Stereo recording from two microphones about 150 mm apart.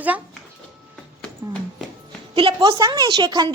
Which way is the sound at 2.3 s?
35° right (ahead or behind).